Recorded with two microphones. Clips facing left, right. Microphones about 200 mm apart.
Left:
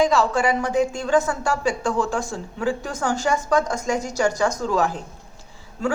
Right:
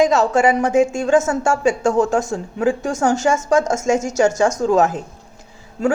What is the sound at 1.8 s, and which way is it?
Speech, 45° right (ahead or behind).